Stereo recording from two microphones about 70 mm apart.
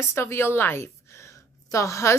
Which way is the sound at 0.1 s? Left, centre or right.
Left.